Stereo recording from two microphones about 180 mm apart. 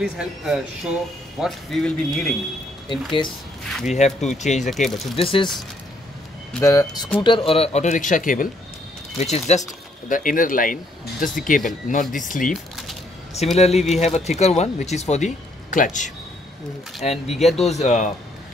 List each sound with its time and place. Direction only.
0.0 s speech: 5° right (ahead or behind)
2.9 s speech: 25° left (ahead or behind)
3.8 s speech: 40° left (ahead or behind)
4.6 s speech: centre (ahead or behind)
5.1 s speech: 30° left (ahead or behind)
6.6 s speech: 20° left (ahead or behind); by 8.5 s 50° left (ahead or behind)
9.2 s speech: 40° left (ahead or behind)
10.0 s speech: 50° left (ahead or behind)
13.6 s speech: 35° left (ahead or behind)